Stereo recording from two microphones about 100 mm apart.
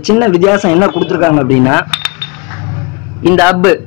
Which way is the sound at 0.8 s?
5° right (ahead or behind).